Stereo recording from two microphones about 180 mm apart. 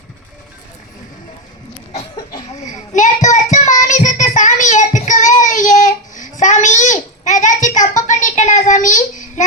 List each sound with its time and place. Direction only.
2.6 s child singing: 45° left (ahead or behind)